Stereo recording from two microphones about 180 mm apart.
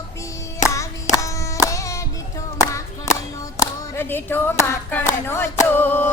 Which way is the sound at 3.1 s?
40° left (ahead or behind).